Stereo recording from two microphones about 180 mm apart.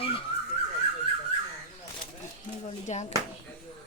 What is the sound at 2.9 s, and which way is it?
Speech, 40° left (ahead or behind).